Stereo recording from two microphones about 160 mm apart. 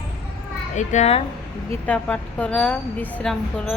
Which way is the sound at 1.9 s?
10° left (ahead or behind).